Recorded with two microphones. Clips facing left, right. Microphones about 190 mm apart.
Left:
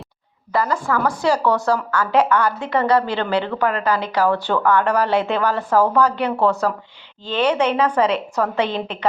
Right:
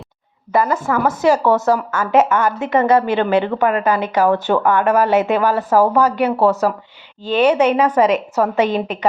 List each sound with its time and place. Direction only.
0.5 s a woman's voice: 20° right (ahead or behind)